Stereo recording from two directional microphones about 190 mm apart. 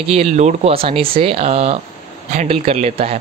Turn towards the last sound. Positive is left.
turn(degrees=-30)  # may be behind; listen again after turning